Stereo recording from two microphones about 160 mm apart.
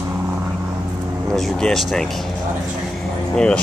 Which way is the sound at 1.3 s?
Centre (ahead or behind).